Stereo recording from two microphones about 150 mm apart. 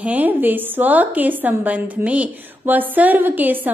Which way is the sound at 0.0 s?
10° right (ahead or behind).